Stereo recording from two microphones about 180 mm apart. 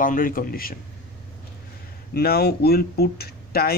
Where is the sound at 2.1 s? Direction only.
60° left (ahead or behind).